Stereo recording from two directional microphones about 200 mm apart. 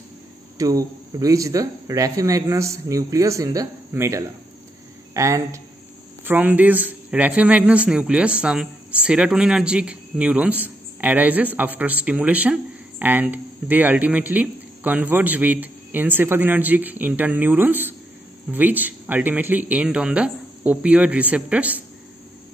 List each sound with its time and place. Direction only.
0.6 s speech: 15° right (ahead or behind)